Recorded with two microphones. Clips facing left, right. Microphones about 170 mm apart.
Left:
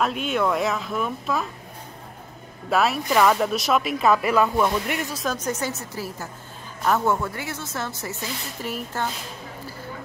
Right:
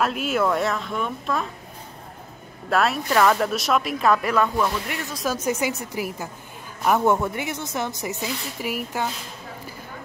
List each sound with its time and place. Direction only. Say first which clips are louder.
0.0 s speech: right 1 dB; 5° right (ahead or behind)
2.7 s speech: even; centre (ahead or behind)
4.6 s speech: left 3 dB; 15° left (ahead or behind)
5.1 s speech: right 2 dB; 5° right (ahead or behind)